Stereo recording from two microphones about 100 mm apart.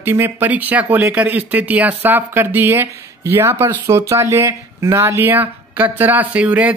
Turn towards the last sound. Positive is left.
turn(degrees=-15)  # may be behind; listen again after turning